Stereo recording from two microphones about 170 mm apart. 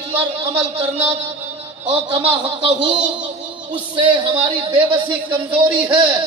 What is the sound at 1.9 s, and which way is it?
A man's voice, 30° right (ahead or behind).